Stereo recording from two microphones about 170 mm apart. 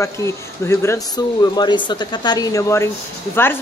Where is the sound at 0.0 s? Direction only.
15° left (ahead or behind).